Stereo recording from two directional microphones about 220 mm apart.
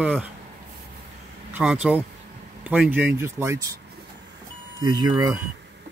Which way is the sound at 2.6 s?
5° right (ahead or behind).